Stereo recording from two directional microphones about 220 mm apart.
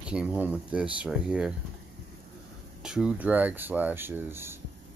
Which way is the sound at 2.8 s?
5° right (ahead or behind).